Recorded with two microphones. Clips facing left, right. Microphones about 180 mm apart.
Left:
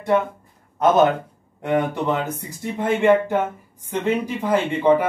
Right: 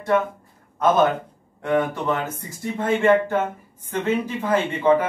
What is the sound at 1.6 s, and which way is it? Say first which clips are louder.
Speech: left 1 dB; 20° left (ahead or behind).